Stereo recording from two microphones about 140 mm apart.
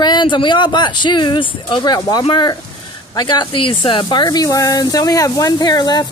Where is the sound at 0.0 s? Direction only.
30° left (ahead or behind).